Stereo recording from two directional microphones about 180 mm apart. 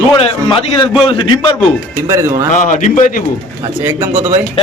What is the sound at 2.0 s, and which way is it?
Speech, 15° right (ahead or behind).